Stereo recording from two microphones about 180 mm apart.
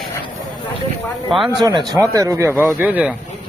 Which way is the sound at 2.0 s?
20° right (ahead or behind).